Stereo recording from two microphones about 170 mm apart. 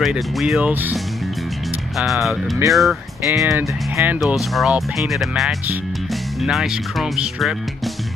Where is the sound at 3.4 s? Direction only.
20° right (ahead or behind).